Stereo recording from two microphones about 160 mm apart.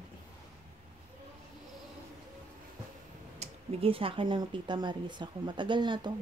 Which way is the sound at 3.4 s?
35° right (ahead or behind).